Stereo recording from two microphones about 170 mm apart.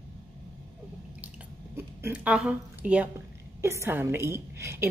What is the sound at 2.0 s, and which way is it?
A woman's voice, 5° right (ahead or behind).